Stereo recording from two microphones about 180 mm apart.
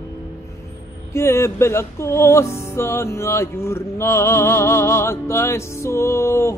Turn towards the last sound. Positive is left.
turn(degrees=15)  # may be behind; listen again after turning